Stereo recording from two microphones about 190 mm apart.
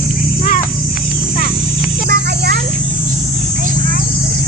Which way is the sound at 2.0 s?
60° right (ahead or behind).